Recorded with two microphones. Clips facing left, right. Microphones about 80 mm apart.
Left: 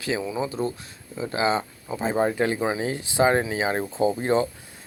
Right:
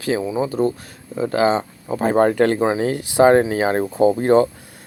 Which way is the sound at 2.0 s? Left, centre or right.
Right.